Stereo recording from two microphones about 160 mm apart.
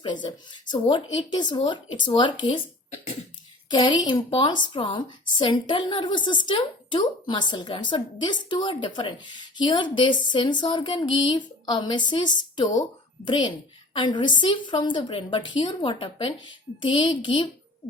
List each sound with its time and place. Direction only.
0.0 s a woman's voice: 30° left (ahead or behind)
3.7 s a woman's voice: 25° left (ahead or behind)